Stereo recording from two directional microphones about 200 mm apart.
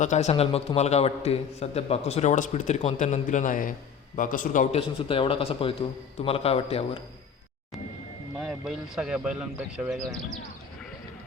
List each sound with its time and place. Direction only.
0.0 s a man's voice: 35° left (ahead or behind)
8.4 s speech: centre (ahead or behind)